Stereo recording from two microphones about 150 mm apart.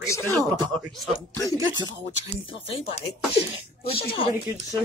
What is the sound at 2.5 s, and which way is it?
Speech, 40° left (ahead or behind).